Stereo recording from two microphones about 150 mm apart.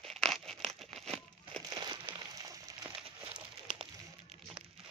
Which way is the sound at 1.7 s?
30° right (ahead or behind).